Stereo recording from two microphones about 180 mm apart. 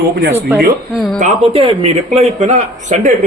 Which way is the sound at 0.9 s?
Centre (ahead or behind).